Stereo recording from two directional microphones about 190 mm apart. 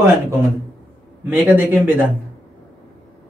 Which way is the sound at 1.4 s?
10° right (ahead or behind).